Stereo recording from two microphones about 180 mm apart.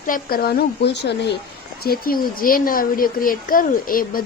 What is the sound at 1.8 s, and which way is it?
Speech, 55° left (ahead or behind).